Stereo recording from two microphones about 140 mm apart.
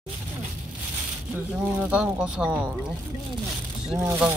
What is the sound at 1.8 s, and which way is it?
Speech, 10° right (ahead or behind).